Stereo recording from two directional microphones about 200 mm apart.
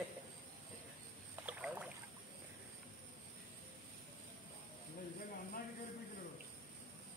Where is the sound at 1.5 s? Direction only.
5° right (ahead or behind).